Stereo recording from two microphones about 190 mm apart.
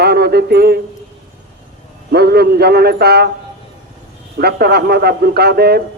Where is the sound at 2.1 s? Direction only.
55° right (ahead or behind).